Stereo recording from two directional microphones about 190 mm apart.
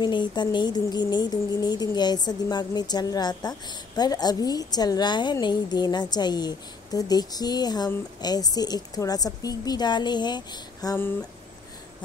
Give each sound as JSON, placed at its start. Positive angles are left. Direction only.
{"t": 0.0, "sound": "speech", "side_deg": 25}